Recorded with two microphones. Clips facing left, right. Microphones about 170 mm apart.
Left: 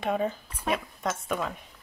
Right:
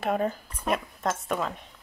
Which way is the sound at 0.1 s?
45° right (ahead or behind).